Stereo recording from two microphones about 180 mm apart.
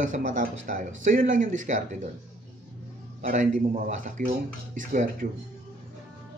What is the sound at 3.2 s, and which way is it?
Speech, 45° right (ahead or behind).